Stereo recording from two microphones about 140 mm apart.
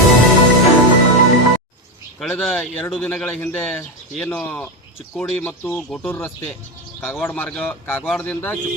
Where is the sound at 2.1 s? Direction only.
5° left (ahead or behind).